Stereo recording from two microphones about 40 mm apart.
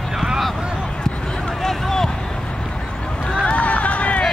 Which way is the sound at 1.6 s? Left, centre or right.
Centre.